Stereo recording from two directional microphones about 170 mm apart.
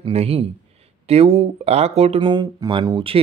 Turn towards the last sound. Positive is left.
turn(degrees=-30)  # may be behind; listen again after turning